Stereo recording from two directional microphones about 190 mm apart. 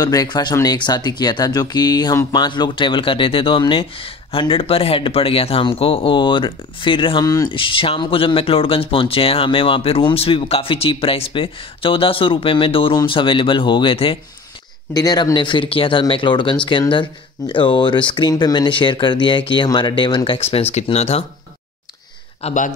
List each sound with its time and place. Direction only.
0.0 s speech: 20° left (ahead or behind)
22.4 s speech: 40° left (ahead or behind)